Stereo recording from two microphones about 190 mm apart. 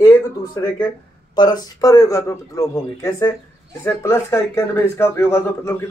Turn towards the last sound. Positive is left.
turn(degrees=10)  # may be behind; listen again after turning